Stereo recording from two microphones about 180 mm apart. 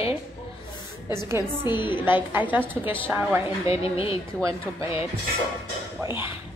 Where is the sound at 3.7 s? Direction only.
30° left (ahead or behind).